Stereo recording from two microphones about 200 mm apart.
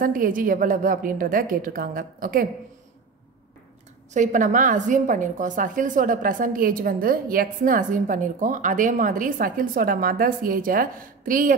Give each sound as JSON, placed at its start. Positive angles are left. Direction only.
{"t": 0.0, "sound": "a woman's voice", "side_deg": -45}
{"t": 4.1, "sound": "a woman's voice", "side_deg": -40}